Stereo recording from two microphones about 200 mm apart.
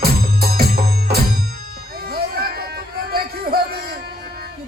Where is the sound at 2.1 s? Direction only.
50° right (ahead or behind).